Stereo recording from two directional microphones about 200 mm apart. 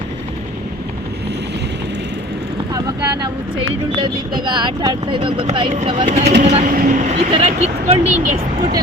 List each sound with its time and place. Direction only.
4.0 s speech: 25° right (ahead or behind)
6.1 s speech: 55° right (ahead or behind)
6.4 s speech: 35° right (ahead or behind)